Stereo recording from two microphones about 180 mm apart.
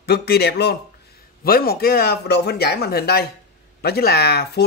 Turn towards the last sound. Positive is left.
turn(degrees=60)  # may be behind; listen again after turning